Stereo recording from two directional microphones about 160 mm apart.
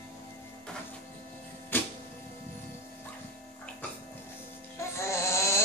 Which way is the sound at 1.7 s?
10° left (ahead or behind).